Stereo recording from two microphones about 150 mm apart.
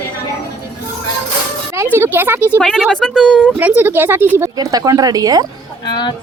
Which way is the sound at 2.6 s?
Centre (ahead or behind).